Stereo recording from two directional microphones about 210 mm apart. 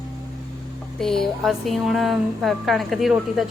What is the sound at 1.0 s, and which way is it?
A woman's voice, centre (ahead or behind).